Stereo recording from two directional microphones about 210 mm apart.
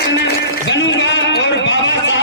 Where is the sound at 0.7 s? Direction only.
60° left (ahead or behind).